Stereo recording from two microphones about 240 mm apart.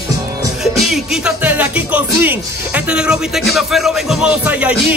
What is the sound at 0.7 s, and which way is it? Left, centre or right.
Music, centre.